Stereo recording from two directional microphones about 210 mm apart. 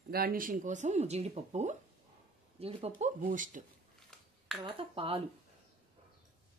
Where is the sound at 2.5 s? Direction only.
30° right (ahead or behind).